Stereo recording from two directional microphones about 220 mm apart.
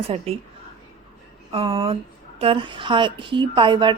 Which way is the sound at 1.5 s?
25° right (ahead or behind).